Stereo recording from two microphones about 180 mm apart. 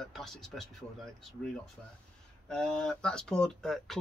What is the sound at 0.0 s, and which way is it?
Speech, centre (ahead or behind).